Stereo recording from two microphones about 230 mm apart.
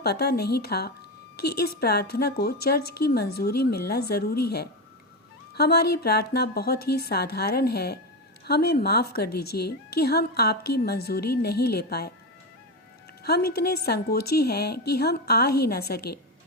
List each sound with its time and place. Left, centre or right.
0.0 s a woman's voice: left
13.2 s a woman's voice: left